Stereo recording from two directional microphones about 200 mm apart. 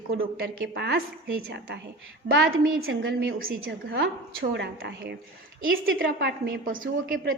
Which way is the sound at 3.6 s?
55° right (ahead or behind).